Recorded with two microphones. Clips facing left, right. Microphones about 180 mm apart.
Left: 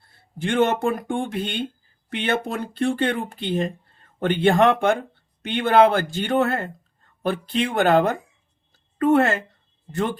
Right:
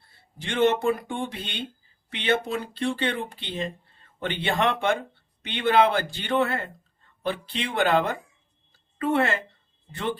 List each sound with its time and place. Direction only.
0.3 s speech: 50° left (ahead or behind)